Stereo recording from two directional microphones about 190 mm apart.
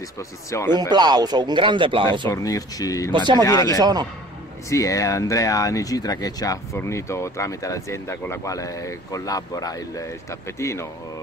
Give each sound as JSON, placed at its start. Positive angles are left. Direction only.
{"t": 0.5, "sound": "speech", "side_deg": 15}
{"t": 0.7, "sound": "speech", "side_deg": -20}
{"t": 2.2, "sound": "speech", "side_deg": 15}
{"t": 3.1, "sound": "speech", "side_deg": -25}
{"t": 3.4, "sound": "speech", "side_deg": 15}
{"t": 3.8, "sound": "speech", "side_deg": -20}
{"t": 4.6, "sound": "speech", "side_deg": 15}